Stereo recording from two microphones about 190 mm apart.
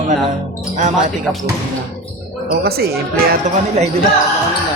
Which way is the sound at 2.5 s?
55° right (ahead or behind).